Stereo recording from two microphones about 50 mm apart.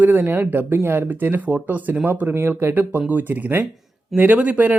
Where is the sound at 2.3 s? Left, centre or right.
Right.